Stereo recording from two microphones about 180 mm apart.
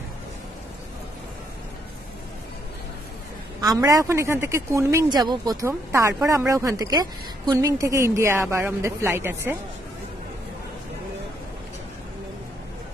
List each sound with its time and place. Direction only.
3.8 s speech: 15° right (ahead or behind)